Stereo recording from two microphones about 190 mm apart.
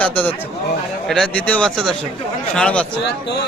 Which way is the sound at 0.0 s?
10° left (ahead or behind).